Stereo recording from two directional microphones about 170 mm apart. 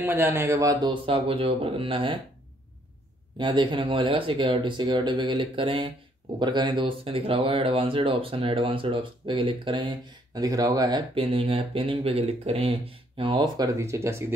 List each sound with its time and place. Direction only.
0.0 s a man's voice: 10° right (ahead or behind)
1.0 s speech: 35° right (ahead or behind)
3.3 s speech: 30° right (ahead or behind)